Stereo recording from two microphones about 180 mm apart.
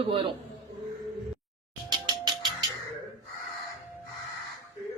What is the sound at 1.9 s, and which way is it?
Music, 20° right (ahead or behind).